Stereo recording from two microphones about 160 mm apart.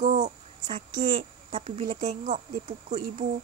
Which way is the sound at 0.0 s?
50° right (ahead or behind).